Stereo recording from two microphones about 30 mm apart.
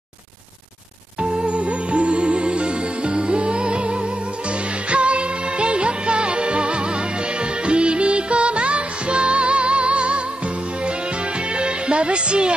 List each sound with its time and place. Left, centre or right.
1.2 s music: right
11.5 s music: right